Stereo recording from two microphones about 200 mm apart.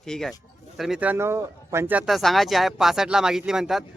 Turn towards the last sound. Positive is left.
turn(degrees=0)  # may be behind; listen again after turning